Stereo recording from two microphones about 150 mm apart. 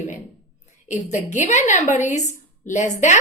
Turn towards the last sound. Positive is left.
turn(degrees=55)  # may be behind; listen again after turning